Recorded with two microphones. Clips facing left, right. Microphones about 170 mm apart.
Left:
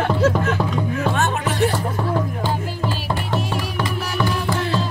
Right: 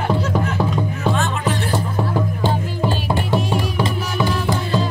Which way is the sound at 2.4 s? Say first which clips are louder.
Right 3 dB; 25° right (ahead or behind).